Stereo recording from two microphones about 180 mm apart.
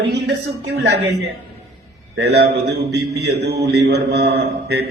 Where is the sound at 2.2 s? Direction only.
65° right (ahead or behind).